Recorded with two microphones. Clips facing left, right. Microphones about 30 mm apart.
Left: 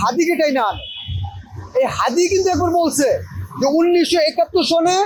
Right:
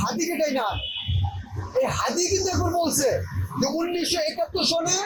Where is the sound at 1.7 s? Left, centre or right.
Left.